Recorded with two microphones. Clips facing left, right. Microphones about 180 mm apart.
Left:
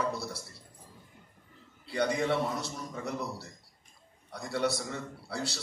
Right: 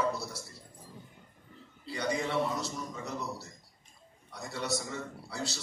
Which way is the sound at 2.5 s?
55° left (ahead or behind).